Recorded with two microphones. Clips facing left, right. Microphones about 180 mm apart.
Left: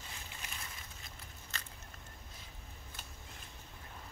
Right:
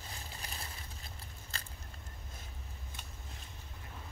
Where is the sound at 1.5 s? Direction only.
30° right (ahead or behind).